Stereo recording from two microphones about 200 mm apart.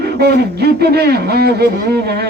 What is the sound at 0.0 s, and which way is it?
Speech, 55° right (ahead or behind).